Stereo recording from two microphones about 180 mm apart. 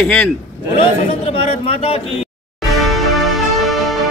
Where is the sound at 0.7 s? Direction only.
30° left (ahead or behind).